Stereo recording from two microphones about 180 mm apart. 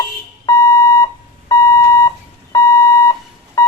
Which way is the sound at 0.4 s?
15° left (ahead or behind).